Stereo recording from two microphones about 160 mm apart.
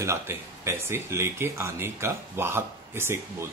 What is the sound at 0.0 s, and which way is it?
Speech, 15° right (ahead or behind).